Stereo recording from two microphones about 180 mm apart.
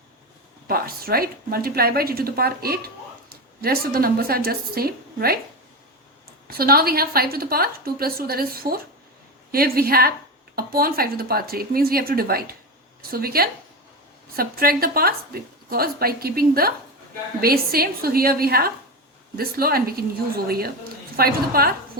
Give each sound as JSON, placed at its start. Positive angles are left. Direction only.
{"t": 0.7, "sound": "a woman's voice", "side_deg": -55}
{"t": 6.5, "sound": "a woman's voice", "side_deg": -55}